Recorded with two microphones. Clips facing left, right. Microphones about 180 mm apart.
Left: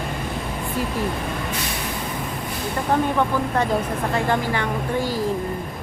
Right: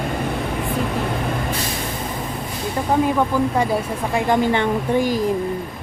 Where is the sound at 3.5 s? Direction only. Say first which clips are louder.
Right 1 dB; 10° right (ahead or behind).